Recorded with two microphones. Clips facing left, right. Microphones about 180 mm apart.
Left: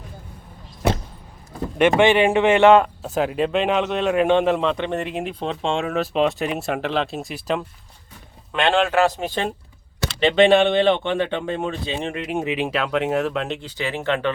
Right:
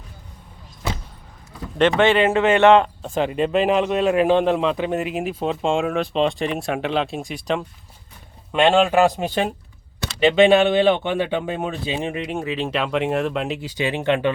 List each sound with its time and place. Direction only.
2.0 s speech: 15° left (ahead or behind)
8.5 s speech: 15° right (ahead or behind)
12.4 s speech: 15° left (ahead or behind)
12.7 s speech: centre (ahead or behind); by 14.3 s 15° right (ahead or behind)